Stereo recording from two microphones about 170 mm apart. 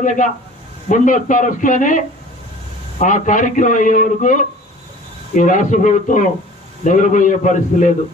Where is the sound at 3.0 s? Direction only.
50° left (ahead or behind).